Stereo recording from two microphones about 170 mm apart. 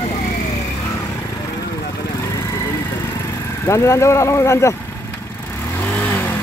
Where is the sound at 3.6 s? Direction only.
15° left (ahead or behind).